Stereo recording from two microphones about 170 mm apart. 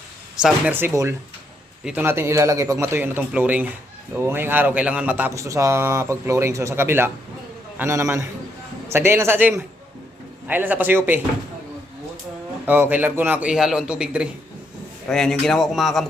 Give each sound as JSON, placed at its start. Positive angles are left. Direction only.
{"t": 0.4, "sound": "speech", "side_deg": -10}
{"t": 12.6, "sound": "a man's voice", "side_deg": -10}